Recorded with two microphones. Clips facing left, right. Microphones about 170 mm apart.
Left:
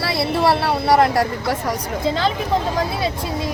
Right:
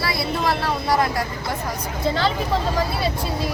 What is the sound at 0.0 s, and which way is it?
Speech, 70° left (ahead or behind).